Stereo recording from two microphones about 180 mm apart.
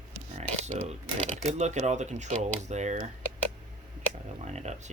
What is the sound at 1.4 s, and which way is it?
Speech, 40° right (ahead or behind).